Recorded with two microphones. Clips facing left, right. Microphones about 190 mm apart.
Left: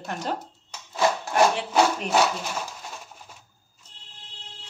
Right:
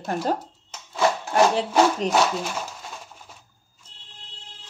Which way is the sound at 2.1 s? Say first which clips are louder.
Right 1 dB; 35° right (ahead or behind).